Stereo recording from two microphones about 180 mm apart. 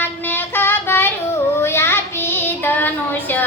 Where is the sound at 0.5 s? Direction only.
10° left (ahead or behind).